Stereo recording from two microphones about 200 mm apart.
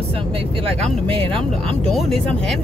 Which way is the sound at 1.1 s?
25° right (ahead or behind).